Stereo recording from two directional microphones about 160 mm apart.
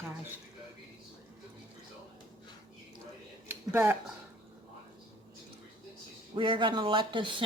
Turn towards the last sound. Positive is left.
turn(degrees=-30)  # may be behind; listen again after turning